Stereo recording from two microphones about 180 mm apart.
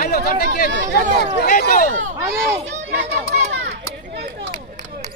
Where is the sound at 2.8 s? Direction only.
70° right (ahead or behind).